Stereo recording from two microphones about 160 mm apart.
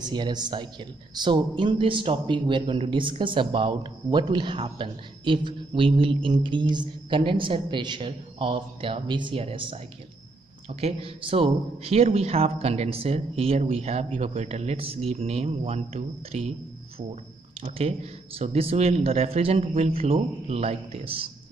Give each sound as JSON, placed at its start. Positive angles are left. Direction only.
{"t": 0.0, "sound": "a man's voice", "side_deg": -25}
{"t": 10.8, "sound": "a man's voice", "side_deg": -40}